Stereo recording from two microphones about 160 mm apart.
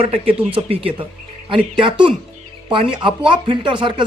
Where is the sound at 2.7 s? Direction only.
30° right (ahead or behind).